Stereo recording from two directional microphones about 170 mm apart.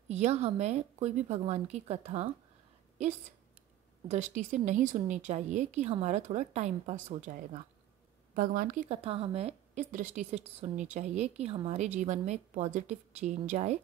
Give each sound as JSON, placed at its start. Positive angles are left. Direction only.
{"t": 0.1, "sound": "a woman's voice", "side_deg": -40}
{"t": 8.8, "sound": "a woman's voice", "side_deg": -35}
{"t": 11.8, "sound": "a woman's voice", "side_deg": -45}